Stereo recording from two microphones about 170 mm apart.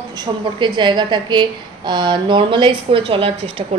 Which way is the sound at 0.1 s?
25° right (ahead or behind).